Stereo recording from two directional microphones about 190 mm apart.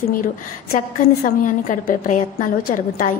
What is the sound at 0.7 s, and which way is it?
A woman's voice, 45° left (ahead or behind).